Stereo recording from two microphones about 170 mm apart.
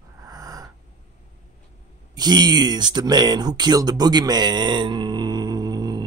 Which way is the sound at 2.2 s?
25° right (ahead or behind).